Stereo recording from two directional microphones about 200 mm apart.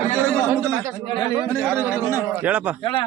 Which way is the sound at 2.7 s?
25° left (ahead or behind).